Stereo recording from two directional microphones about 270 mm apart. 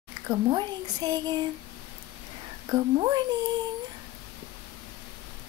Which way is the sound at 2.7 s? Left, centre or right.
Centre.